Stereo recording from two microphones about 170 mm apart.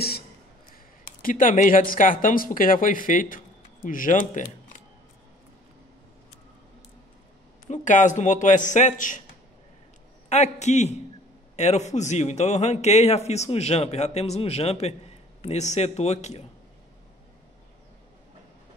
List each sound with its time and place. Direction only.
1.2 s speech: 50° left (ahead or behind)
7.6 s a man's voice: 45° left (ahead or behind)
10.3 s a man's voice: 40° left (ahead or behind)